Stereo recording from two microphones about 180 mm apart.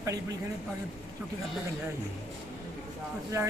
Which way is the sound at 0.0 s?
20° right (ahead or behind).